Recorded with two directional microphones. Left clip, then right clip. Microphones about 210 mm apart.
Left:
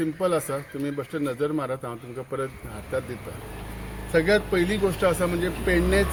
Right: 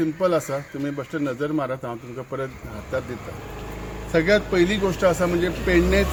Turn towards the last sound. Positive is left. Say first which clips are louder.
# right 3 dB
turn(degrees=5)  # may be behind; listen again after turning